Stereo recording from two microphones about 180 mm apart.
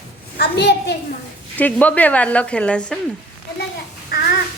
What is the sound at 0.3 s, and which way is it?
Speech, 65° left (ahead or behind).